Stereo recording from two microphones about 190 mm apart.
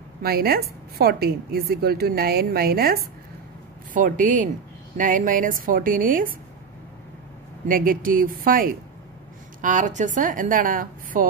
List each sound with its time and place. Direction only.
0.2 s a woman's voice: 55° right (ahead or behind)
7.6 s a woman's voice: 50° right (ahead or behind)